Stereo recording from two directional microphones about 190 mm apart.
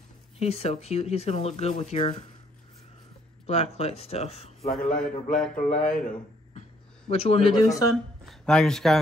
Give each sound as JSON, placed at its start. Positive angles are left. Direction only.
{"t": 0.4, "sound": "speech", "side_deg": 30}
{"t": 3.4, "sound": "speech", "side_deg": 35}
{"t": 4.6, "sound": "a man's voice", "side_deg": 0}
{"t": 5.5, "sound": "speech", "side_deg": 40}
{"t": 5.8, "sound": "a man's voice", "side_deg": 5}
{"t": 7.1, "sound": "speech", "side_deg": 30}
{"t": 7.9, "sound": "speech", "side_deg": 0}